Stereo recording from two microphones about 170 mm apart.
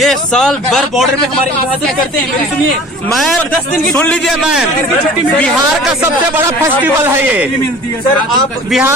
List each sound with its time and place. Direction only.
0.0 s speech: centre (ahead or behind)
3.2 s speech: centre (ahead or behind)
6.3 s a man's voice: 15° right (ahead or behind)
8.7 s a man's voice: 10° right (ahead or behind)